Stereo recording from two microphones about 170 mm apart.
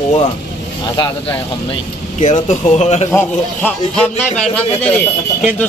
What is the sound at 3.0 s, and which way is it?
A man's voice, 15° left (ahead or behind).